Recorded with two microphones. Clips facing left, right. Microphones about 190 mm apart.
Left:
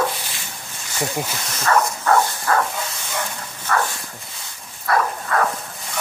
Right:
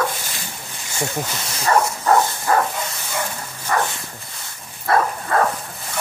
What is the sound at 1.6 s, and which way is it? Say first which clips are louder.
Bow-wow: right 1 dB; 15° right (ahead or behind).